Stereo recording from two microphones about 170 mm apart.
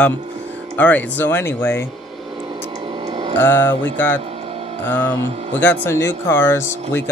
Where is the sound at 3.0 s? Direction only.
25° right (ahead or behind).